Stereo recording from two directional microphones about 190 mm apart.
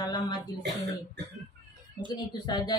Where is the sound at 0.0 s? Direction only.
20° left (ahead or behind).